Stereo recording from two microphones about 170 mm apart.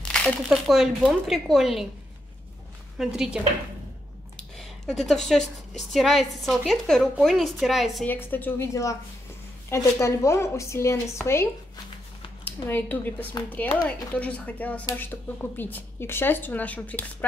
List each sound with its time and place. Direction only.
0.1 s a woman's voice: centre (ahead or behind)
3.0 s a woman's voice: 5° right (ahead or behind)
4.6 s a woman's voice: centre (ahead or behind)
8.1 s a woman's voice: 10° left (ahead or behind)
12.4 s a woman's voice: 10° left (ahead or behind)